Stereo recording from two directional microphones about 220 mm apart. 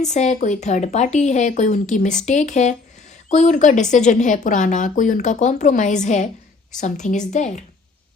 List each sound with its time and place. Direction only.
0.0 s a woman's voice: 30° left (ahead or behind)